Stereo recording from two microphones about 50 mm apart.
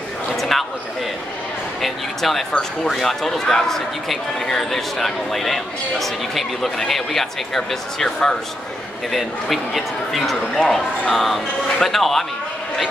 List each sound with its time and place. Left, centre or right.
0.4 s a sound: centre
1.8 s speech: centre
9.1 s speech: centre
10.5 s speech: centre
11.1 s speech: centre